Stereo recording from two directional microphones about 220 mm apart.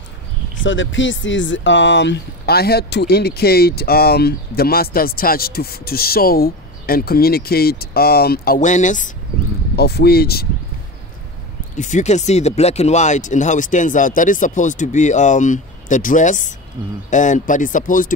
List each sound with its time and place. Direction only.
0.6 s speech: 60° left (ahead or behind); by 9.1 s 35° left (ahead or behind)
9.8 s speech: 45° left (ahead or behind)
11.7 s speech: 35° left (ahead or behind)